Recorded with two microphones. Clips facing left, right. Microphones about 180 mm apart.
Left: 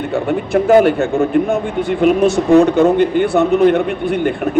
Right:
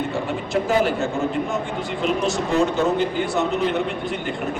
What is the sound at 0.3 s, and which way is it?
Speech, 60° left (ahead or behind).